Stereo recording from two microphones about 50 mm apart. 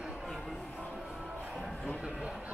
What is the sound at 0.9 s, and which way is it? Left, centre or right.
Music, centre.